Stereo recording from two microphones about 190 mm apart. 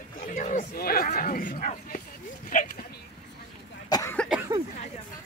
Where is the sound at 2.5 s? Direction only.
45° left (ahead or behind).